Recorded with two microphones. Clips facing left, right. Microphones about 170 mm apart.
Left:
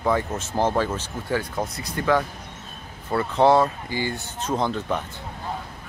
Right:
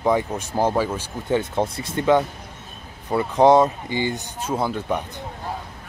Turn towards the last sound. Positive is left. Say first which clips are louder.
# right 1 dB
turn(degrees=-10)  # may be behind; listen again after turning